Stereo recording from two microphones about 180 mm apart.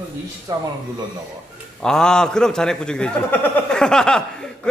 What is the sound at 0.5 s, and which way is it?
Speech, 20° right (ahead or behind).